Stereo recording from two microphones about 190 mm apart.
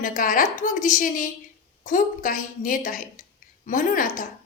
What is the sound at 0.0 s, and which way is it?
A woman's voice, 45° left (ahead or behind).